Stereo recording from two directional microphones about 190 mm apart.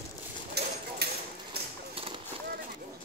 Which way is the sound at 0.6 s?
60° right (ahead or behind).